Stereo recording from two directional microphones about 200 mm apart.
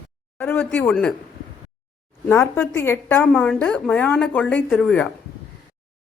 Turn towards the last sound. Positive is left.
turn(degrees=5)  # may be behind; listen again after turning